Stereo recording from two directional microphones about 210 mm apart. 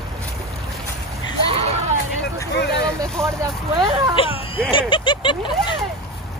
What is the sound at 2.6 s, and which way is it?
Vehicle, 50° left (ahead or behind).